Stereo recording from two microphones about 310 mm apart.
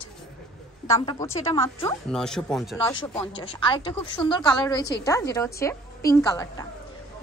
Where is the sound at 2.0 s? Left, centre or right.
Centre.